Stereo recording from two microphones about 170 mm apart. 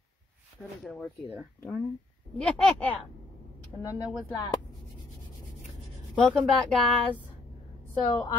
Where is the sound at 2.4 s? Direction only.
5° left (ahead or behind).